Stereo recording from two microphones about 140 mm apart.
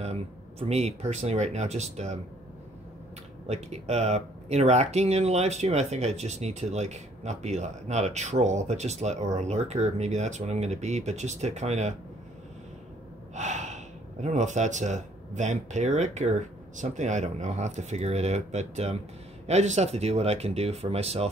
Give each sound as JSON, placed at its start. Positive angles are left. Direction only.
{"t": 0.0, "sound": "speech", "side_deg": -50}
{"t": 3.4, "sound": "speech", "side_deg": -55}
{"t": 13.3, "sound": "speech", "side_deg": -55}